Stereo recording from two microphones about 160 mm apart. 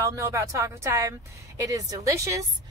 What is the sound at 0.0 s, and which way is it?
A woman's voice, 20° right (ahead or behind).